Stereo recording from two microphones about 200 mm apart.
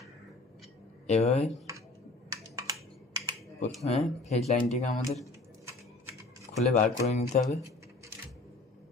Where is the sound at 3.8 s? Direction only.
30° left (ahead or behind).